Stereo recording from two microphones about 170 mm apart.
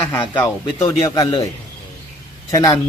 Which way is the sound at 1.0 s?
30° left (ahead or behind).